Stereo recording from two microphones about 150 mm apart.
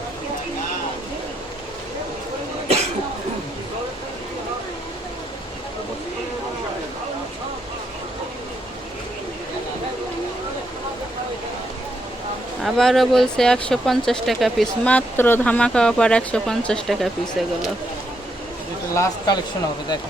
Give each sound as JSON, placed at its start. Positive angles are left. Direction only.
{"t": 12.6, "sound": "speech", "side_deg": 0}
{"t": 18.9, "sound": "speech", "side_deg": 30}